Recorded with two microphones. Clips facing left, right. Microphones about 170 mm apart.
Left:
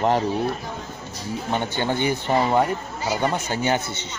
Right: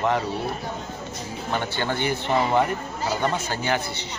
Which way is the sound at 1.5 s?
15° left (ahead or behind).